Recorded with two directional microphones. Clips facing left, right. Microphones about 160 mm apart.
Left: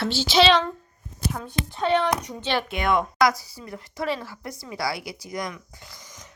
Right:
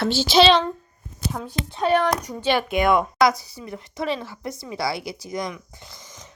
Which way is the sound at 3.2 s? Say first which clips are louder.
Right 2 dB; 20° right (ahead or behind).